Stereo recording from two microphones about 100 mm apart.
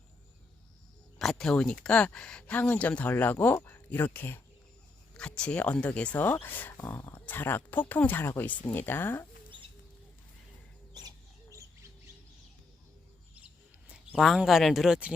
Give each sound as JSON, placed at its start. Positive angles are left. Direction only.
{"t": 1.2, "sound": "speech", "side_deg": 5}
{"t": 5.1, "sound": "speech", "side_deg": 10}
{"t": 13.8, "sound": "speech", "side_deg": -10}